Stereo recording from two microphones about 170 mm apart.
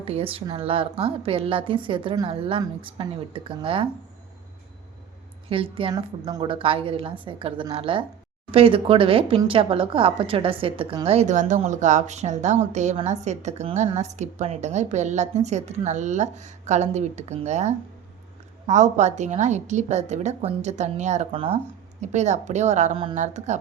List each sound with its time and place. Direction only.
0.0 s a woman's voice: 35° right (ahead or behind)
5.5 s a woman's voice: 35° right (ahead or behind)